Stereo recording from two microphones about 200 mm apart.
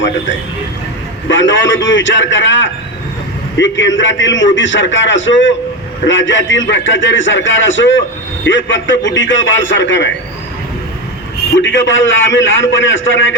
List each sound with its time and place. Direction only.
1.3 s a man's voice: 65° left (ahead or behind)
11.6 s a man's voice: 70° left (ahead or behind)